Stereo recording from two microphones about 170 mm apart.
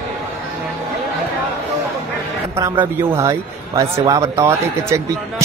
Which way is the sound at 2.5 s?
15° right (ahead or behind).